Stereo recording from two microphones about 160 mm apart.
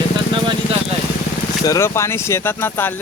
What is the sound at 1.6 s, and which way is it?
Speech, 20° left (ahead or behind).